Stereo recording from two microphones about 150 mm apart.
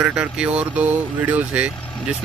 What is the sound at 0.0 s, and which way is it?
Speech, 5° right (ahead or behind).